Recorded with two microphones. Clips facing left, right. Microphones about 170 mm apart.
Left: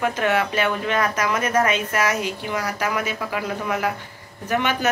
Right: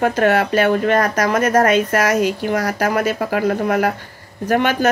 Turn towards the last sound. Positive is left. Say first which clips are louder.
# right 6 dB
turn(degrees=-50)  # may be behind; listen again after turning